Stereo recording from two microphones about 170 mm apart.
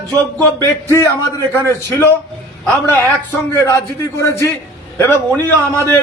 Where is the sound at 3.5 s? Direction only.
15° left (ahead or behind).